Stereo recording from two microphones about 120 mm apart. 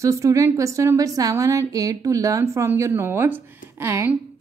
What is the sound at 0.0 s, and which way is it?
A woman's voice, 25° right (ahead or behind).